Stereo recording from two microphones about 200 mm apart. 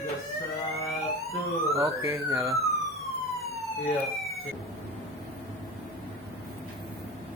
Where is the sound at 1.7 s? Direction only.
15° right (ahead or behind).